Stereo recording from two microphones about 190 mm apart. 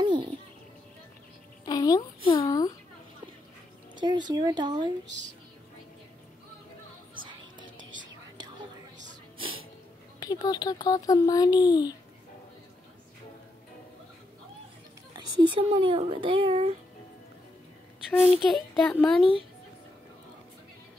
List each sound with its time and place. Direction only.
0.0 s bird: 25° right (ahead or behind)
1.7 s speech: 20° left (ahead or behind)
3.9 s speech: 25° right (ahead or behind)
10.2 s speech: 20° left (ahead or behind)
15.1 s speech: 25° right (ahead or behind)
18.5 s a child's voice: 5° left (ahead or behind)